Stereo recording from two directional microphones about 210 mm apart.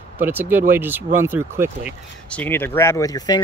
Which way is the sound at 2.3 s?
10° left (ahead or behind).